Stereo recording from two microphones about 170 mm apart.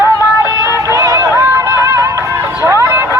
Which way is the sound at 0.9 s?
20° right (ahead or behind).